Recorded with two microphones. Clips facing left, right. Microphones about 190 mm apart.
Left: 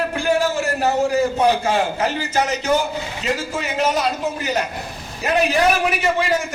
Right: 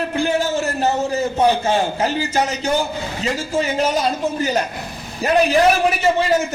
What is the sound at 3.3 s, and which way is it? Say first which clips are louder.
A man's voice: right 3 dB; 30° right (ahead or behind).